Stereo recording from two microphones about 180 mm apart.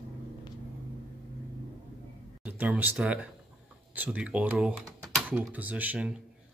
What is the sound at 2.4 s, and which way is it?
Speech, 10° right (ahead or behind).